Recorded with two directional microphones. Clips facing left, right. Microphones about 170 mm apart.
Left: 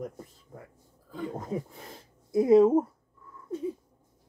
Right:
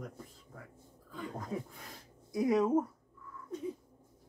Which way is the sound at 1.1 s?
25° left (ahead or behind).